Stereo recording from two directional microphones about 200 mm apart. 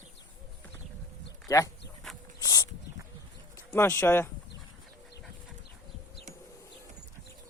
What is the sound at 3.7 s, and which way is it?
Speech, 10° left (ahead or behind).